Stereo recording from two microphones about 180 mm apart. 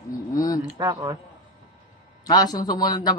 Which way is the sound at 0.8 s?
20° right (ahead or behind).